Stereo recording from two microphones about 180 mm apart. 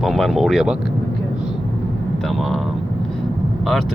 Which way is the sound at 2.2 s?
Centre (ahead or behind).